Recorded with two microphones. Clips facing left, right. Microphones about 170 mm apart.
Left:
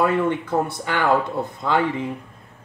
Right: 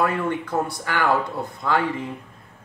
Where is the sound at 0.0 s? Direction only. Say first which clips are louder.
Left 3 dB; 20° left (ahead or behind).